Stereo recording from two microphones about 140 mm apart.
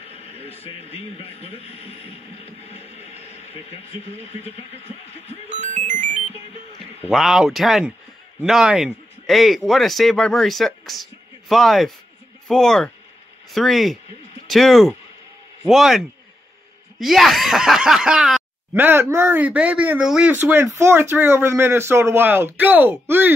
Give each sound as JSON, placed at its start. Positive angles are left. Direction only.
{"t": 0.1, "sound": "speech", "side_deg": 45}
{"t": 5.5, "sound": "music", "side_deg": -60}
{"t": 7.1, "sound": "speech", "side_deg": 0}
{"t": 18.8, "sound": "speech", "side_deg": -15}